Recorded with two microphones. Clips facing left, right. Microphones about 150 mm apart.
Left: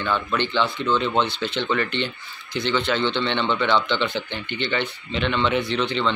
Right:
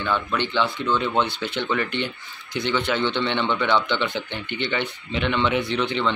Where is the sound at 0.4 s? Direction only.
15° right (ahead or behind).